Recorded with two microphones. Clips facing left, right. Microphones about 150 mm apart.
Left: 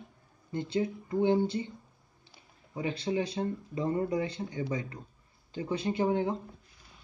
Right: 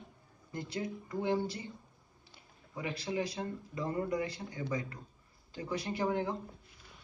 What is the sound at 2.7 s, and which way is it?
Speech, 25° left (ahead or behind).